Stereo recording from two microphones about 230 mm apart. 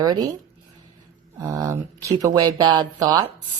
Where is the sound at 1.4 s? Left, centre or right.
Centre.